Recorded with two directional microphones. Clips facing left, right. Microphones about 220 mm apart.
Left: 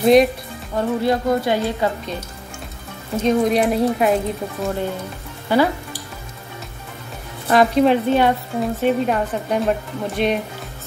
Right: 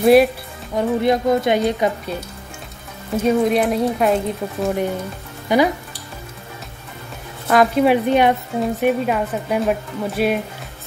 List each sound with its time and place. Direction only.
0.0 s speech: 5° right (ahead or behind)
0.7 s a woman's voice: 20° right (ahead or behind)
3.2 s speech: 5° right (ahead or behind)
5.5 s a woman's voice: 15° right (ahead or behind)
7.4 s a woman's voice: centre (ahead or behind)